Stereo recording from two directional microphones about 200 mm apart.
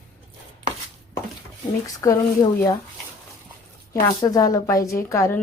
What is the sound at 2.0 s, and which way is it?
Speech, 20° left (ahead or behind).